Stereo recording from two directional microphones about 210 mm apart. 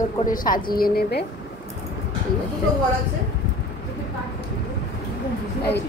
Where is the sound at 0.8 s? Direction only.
50° left (ahead or behind).